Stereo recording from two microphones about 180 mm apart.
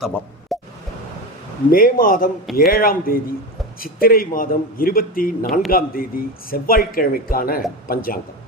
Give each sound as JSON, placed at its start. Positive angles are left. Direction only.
{"t": 0.0, "sound": "plop", "side_deg": 0}
{"t": 1.7, "sound": "a man's voice", "side_deg": 50}